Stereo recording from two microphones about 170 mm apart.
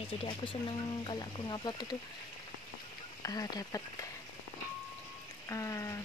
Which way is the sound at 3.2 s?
20° left (ahead or behind).